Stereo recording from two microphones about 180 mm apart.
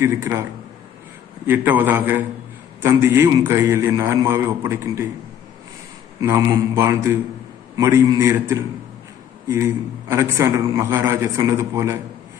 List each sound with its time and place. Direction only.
0.0 s a man's voice: 15° right (ahead or behind)
1.5 s a man's voice: 10° right (ahead or behind)
6.2 s a man's voice: 15° right (ahead or behind)